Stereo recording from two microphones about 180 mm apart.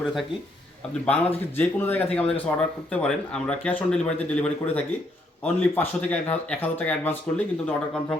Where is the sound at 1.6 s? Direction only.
10° left (ahead or behind).